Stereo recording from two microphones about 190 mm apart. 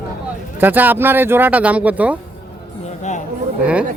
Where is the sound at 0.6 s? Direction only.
10° right (ahead or behind).